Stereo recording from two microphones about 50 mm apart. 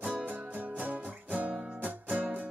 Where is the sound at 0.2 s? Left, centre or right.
Right.